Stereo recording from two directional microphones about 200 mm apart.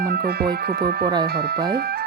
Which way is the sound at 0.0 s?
55° right (ahead or behind).